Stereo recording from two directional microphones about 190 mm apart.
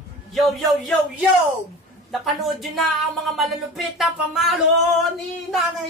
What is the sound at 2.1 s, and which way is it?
Speech, centre (ahead or behind).